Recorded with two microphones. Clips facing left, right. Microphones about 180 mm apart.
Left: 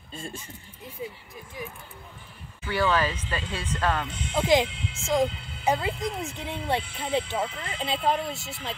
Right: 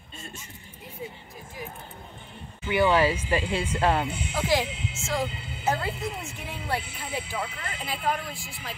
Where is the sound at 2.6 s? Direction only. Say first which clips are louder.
Right 3 dB; 20° right (ahead or behind).